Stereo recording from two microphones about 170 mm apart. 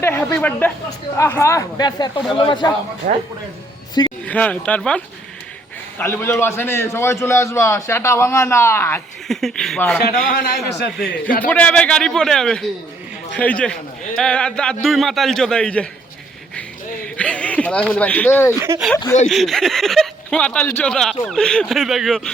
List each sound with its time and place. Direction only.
0.0 s a man's voice: 15° left (ahead or behind)
3.0 s speech: 55° right (ahead or behind)
4.0 s speech: 25° left (ahead or behind)
4.3 s a man's voice: 10° left (ahead or behind)
9.2 s speech: centre (ahead or behind)
10.3 s a man's voice: 65° left (ahead or behind)
11.4 s a man's voice: 10° left (ahead or behind)
17.2 s a man's voice: 5° left (ahead or behind)
19.3 s speech: centre (ahead or behind)